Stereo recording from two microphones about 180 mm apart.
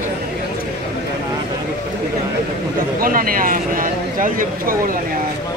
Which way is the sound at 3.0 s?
50° right (ahead or behind).